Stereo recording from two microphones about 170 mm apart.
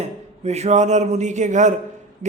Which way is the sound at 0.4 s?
40° right (ahead or behind).